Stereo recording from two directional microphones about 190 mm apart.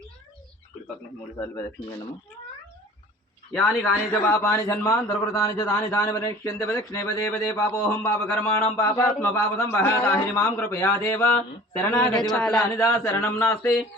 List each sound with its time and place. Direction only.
3.5 s a man's voice: 5° left (ahead or behind)